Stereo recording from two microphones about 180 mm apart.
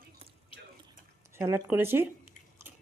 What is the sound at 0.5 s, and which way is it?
Drip, 30° left (ahead or behind).